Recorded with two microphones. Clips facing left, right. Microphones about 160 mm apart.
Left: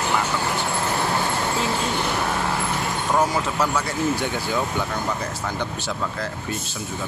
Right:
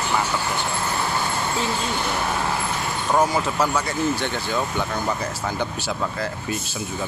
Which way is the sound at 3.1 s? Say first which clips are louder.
Right 2 dB; centre (ahead or behind).